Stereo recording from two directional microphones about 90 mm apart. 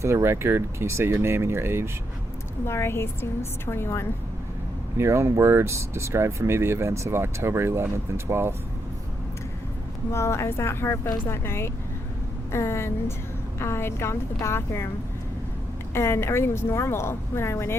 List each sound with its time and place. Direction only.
0.0 s speech: 30° right (ahead or behind)
2.6 s a woman's voice: 30° left (ahead or behind)
4.9 s speech: 30° right (ahead or behind)
10.1 s a woman's voice: 30° left (ahead or behind)
16.0 s a woman's voice: 30° left (ahead or behind)